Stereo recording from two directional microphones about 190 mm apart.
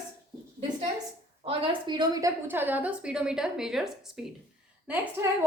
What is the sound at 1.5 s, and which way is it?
A woman's voice, 20° right (ahead or behind).